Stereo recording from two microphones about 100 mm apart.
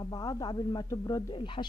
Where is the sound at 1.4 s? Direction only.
55° left (ahead or behind).